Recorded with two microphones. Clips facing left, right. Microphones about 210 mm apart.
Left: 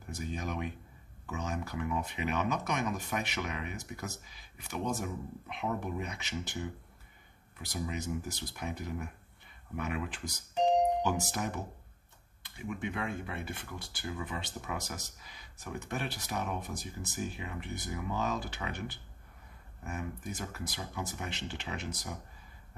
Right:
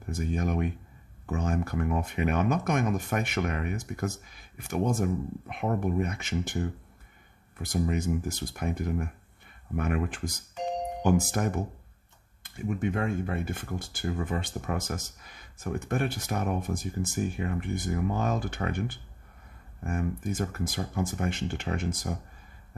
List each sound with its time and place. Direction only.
0.2 s speech: 50° right (ahead or behind)